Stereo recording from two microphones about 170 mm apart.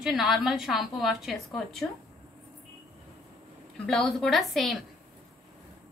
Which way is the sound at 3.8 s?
Centre (ahead or behind).